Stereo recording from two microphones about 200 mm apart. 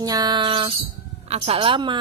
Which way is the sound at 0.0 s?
20° right (ahead or behind).